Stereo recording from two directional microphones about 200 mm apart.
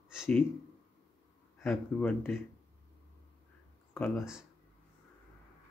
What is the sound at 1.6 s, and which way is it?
Speech, 5° left (ahead or behind).